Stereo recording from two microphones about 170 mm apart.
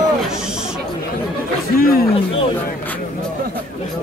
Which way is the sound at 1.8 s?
60° left (ahead or behind).